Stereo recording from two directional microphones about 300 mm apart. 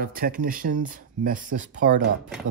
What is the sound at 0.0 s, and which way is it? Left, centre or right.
Speech, right.